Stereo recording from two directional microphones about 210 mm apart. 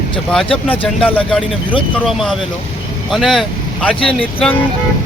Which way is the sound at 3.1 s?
Centre (ahead or behind).